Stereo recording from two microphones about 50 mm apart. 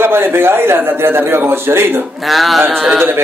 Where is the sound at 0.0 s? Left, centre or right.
Right.